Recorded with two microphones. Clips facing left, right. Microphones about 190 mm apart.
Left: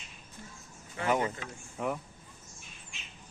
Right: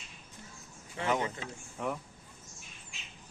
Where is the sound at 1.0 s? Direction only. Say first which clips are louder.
Left 2 dB; 10° left (ahead or behind).